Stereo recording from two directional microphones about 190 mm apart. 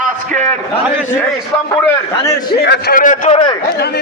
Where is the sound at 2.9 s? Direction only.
45° left (ahead or behind).